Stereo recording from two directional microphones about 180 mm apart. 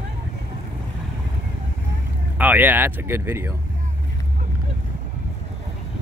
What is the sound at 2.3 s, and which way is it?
Speech, 10° right (ahead or behind).